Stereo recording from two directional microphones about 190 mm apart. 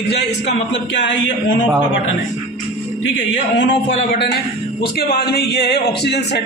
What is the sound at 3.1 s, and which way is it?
Speech, 75° left (ahead or behind).